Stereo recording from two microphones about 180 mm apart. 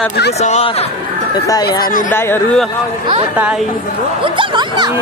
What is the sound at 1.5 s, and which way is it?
Speech, 20° left (ahead or behind).